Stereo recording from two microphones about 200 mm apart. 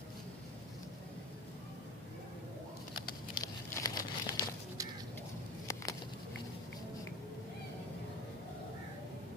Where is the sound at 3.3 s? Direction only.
15° left (ahead or behind).